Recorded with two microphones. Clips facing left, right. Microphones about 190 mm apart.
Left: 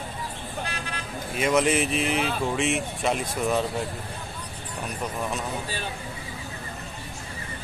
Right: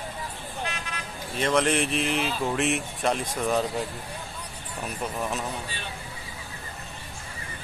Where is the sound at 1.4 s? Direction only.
5° left (ahead or behind).